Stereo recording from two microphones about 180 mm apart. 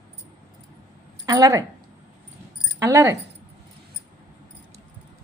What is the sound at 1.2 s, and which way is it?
Speech, 20° right (ahead or behind).